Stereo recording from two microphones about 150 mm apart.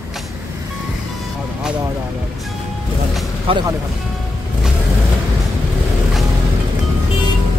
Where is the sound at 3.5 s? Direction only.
35° right (ahead or behind).